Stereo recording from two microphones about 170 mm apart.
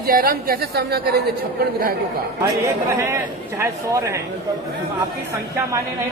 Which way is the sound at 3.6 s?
20° right (ahead or behind).